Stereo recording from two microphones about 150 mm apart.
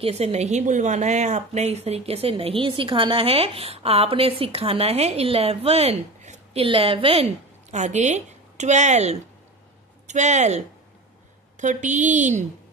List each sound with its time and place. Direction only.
0.0 s a woman's voice: 45° right (ahead or behind)
6.6 s a woman's voice: 35° right (ahead or behind)
7.7 s a woman's voice: 50° right (ahead or behind)